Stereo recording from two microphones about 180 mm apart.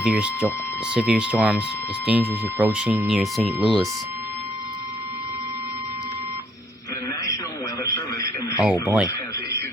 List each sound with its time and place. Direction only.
0.0 s speech: 5° right (ahead or behind)
8.6 s speech: 5° right (ahead or behind)
9.0 s speech: 15° left (ahead or behind)